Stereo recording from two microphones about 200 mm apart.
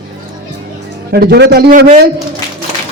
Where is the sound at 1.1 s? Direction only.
55° right (ahead or behind).